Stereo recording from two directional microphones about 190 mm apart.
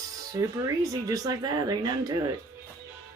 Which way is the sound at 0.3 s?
20° right (ahead or behind).